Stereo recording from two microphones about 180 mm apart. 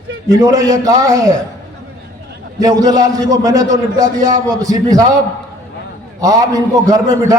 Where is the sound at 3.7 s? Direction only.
45° right (ahead or behind).